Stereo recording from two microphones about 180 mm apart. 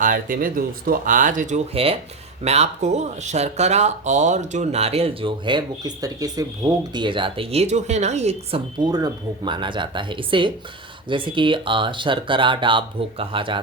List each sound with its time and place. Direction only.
0.0 s speech: 50° right (ahead or behind); by 13.6 s 30° right (ahead or behind)